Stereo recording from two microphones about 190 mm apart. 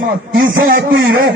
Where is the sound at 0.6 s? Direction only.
50° right (ahead or behind).